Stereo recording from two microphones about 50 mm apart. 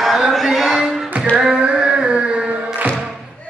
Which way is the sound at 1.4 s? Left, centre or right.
Centre.